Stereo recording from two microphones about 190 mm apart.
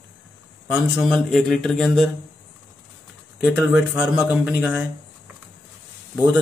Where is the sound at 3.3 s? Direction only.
5° right (ahead or behind).